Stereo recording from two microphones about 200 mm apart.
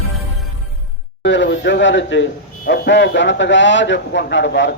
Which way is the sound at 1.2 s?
65° left (ahead or behind).